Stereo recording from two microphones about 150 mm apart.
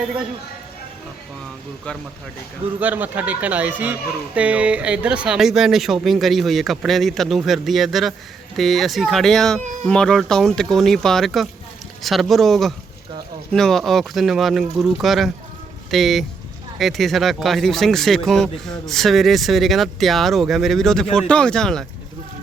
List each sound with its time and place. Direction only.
2.8 s speech: 10° right (ahead or behind)